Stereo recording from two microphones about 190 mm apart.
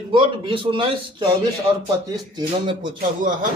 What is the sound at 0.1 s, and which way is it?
Speech, 25° right (ahead or behind).